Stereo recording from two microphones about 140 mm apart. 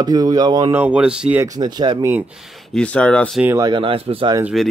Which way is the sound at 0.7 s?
10° right (ahead or behind).